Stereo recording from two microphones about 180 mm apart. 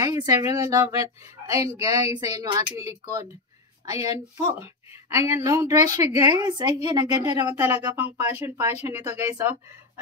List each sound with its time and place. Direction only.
0.0 s speech: 20° right (ahead or behind)
4.0 s speech: 20° right (ahead or behind)
7.4 s speech: 10° right (ahead or behind)